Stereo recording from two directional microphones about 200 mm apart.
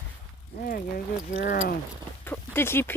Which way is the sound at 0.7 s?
45° left (ahead or behind).